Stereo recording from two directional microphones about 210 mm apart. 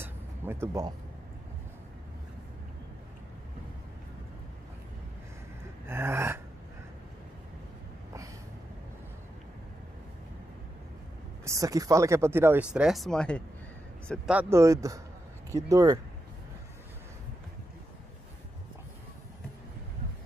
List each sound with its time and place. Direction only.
0.0 s a sound: 10° right (ahead or behind)
5.9 s speech: 10° right (ahead or behind)
11.4 s speech: 15° right (ahead or behind); by 14.3 s 5° left (ahead or behind)
14.3 s speech: 10° right (ahead or behind)